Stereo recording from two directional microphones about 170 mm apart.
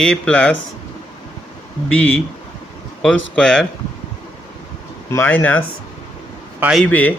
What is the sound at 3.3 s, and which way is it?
Speech, 5° left (ahead or behind).